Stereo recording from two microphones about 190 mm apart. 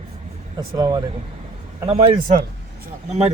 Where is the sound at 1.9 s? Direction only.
30° right (ahead or behind).